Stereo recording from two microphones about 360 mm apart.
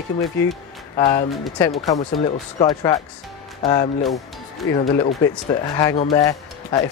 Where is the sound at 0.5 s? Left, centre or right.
Centre.